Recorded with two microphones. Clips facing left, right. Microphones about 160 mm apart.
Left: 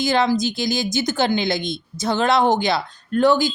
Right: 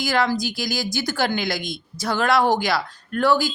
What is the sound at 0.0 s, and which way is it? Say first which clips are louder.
Speech: left 3 dB; 20° left (ahead or behind).